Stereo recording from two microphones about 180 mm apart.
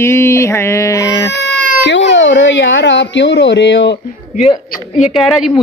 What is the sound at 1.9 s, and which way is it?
Speech, 80° left.